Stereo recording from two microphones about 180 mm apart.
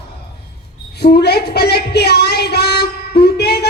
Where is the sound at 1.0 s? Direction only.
60° left (ahead or behind).